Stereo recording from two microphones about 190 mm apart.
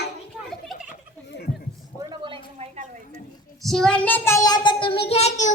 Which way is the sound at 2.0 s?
25° right (ahead or behind).